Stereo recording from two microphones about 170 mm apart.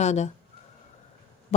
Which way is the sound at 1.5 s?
40° left (ahead or behind).